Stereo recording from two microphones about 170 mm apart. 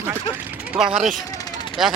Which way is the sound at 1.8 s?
5° right (ahead or behind).